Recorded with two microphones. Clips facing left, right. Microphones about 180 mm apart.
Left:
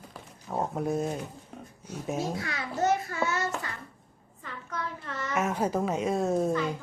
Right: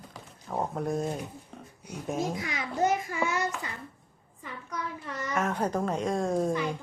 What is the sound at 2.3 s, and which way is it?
A child's voice, 15° right (ahead or behind).